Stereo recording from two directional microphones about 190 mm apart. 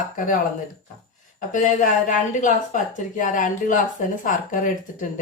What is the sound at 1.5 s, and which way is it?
Speech, 40° left (ahead or behind).